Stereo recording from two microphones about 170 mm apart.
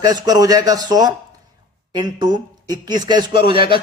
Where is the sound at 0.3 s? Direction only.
20° right (ahead or behind).